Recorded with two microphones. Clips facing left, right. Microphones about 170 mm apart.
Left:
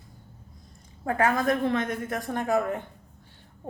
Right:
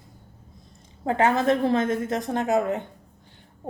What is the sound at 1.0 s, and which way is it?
A woman's voice, 25° right (ahead or behind).